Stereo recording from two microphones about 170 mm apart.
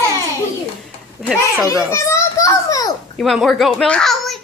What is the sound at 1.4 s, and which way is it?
A child's voice, 15° left (ahead or behind).